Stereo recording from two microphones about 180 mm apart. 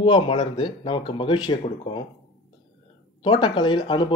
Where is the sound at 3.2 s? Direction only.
25° left (ahead or behind).